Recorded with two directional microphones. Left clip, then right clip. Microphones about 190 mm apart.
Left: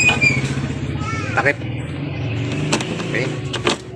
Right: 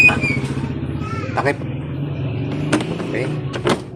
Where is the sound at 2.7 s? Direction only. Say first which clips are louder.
Right 1 dB; 20° right (ahead or behind).